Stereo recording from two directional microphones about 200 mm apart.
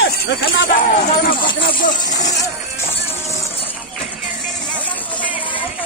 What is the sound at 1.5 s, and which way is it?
Speech, 50° left (ahead or behind).